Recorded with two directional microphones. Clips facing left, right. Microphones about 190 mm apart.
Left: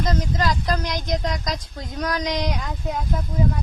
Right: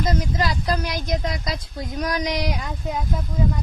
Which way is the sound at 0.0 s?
10° right (ahead or behind).